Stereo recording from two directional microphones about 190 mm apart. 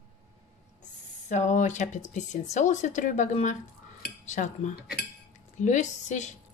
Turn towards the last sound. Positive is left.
turn(degrees=40)  # may be behind; listen again after turning